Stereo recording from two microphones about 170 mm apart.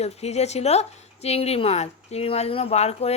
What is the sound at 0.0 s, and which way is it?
Speech, 40° left (ahead or behind).